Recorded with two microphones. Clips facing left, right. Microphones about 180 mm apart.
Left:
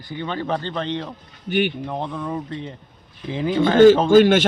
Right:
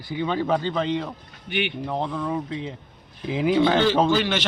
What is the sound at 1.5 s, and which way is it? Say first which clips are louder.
Speech: left 6 dB; 45° left (ahead or behind).